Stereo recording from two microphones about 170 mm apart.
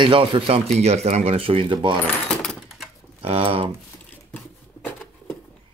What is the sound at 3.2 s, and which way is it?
Speech, 35° right (ahead or behind).